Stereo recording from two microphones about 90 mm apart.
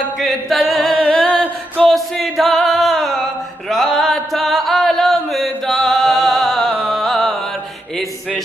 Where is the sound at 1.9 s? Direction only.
Centre (ahead or behind).